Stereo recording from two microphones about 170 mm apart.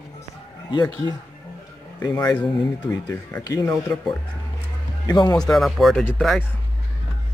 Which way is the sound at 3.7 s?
Centre (ahead or behind).